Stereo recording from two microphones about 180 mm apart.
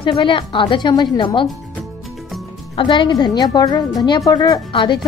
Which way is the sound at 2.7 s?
25° left (ahead or behind).